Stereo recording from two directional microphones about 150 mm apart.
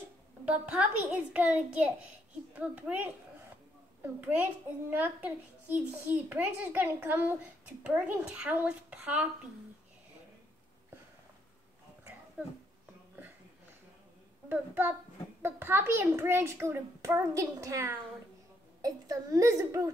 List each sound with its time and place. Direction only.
0.5 s a woman's voice: 10° right (ahead or behind)
14.5 s a woman's voice: 15° right (ahead or behind)